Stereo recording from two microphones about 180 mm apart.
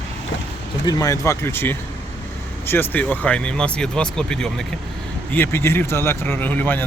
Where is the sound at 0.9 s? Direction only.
20° left (ahead or behind).